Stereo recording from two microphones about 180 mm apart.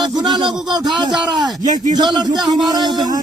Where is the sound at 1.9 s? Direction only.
25° right (ahead or behind).